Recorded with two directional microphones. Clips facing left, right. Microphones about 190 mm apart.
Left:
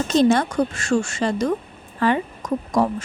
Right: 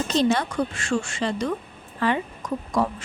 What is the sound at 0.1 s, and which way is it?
Speech, 45° left (ahead or behind).